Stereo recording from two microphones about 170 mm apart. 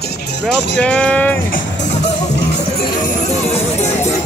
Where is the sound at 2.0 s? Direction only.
85° left.